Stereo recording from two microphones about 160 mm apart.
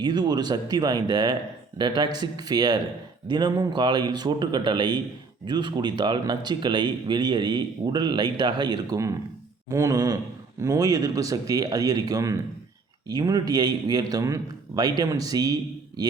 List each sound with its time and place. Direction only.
0.0 s speech: 25° right (ahead or behind)